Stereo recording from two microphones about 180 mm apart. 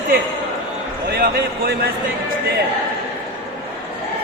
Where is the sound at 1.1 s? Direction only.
55° right (ahead or behind).